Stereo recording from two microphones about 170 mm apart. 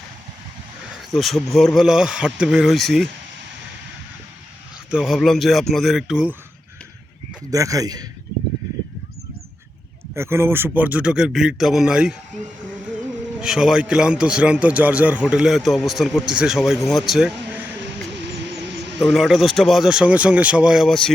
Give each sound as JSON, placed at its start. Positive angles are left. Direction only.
{"t": 1.1, "sound": "a man's voice", "side_deg": 0}
{"t": 4.9, "sound": "a man's voice", "side_deg": 0}
{"t": 7.5, "sound": "a man's voice", "side_deg": -20}
{"t": 10.2, "sound": "a man's voice", "side_deg": -15}
{"t": 13.4, "sound": "a man's voice", "side_deg": -5}
{"t": 18.6, "sound": "music", "side_deg": -90}
{"t": 18.9, "sound": "a man's voice", "side_deg": 0}